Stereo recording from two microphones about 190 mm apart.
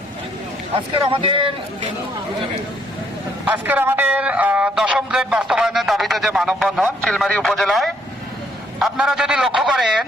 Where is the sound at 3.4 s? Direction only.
10° right (ahead or behind).